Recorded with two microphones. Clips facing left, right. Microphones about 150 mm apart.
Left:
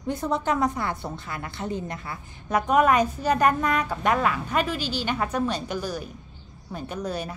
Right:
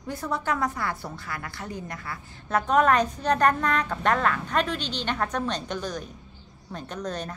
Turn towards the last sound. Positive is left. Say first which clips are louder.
# left 2 dB
turn(degrees=10)  # may be behind; listen again after turning